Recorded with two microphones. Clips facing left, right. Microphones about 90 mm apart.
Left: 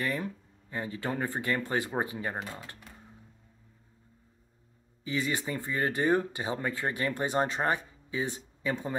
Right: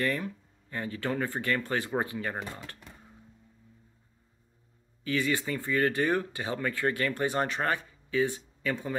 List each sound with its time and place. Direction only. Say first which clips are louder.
0.2 s speech: left 1 dB; 15° left (ahead or behind)
5.0 s speech: right 2 dB; 20° left (ahead or behind)